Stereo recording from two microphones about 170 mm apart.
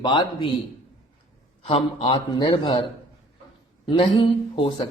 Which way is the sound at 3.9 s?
30° left (ahead or behind).